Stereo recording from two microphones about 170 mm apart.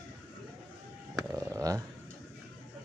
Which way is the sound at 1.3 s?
20° right (ahead or behind).